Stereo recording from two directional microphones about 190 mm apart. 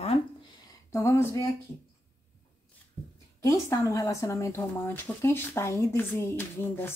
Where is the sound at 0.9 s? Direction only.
15° left (ahead or behind).